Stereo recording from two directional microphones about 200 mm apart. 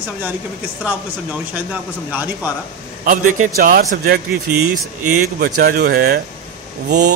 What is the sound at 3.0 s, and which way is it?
A man's voice, 40° right (ahead or behind).